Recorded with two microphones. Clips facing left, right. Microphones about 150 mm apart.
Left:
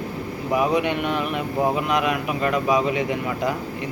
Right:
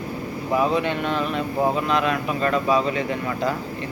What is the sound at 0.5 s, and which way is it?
Speech, 15° left (ahead or behind).